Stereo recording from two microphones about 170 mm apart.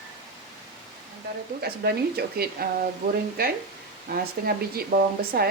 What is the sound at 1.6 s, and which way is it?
Speech, 65° right (ahead or behind).